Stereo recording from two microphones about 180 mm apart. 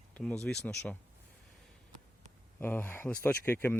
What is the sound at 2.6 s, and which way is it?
Speech, 10° left (ahead or behind).